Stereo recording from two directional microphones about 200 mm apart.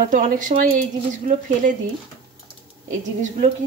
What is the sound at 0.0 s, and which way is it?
Speech, 40° right (ahead or behind).